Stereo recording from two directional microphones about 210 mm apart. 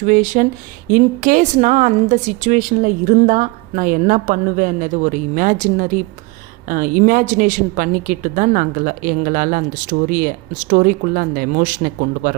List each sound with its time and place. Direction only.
0.0 s a woman's voice: 35° right (ahead or behind)